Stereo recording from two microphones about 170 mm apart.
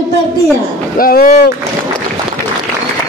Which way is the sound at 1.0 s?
60° left (ahead or behind).